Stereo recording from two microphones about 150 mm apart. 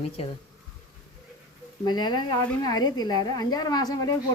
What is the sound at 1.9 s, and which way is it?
A woman's voice, 30° left (ahead or behind).